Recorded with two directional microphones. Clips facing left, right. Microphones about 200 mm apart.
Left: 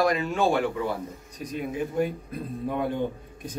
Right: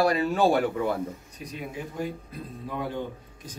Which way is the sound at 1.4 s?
50° left (ahead or behind).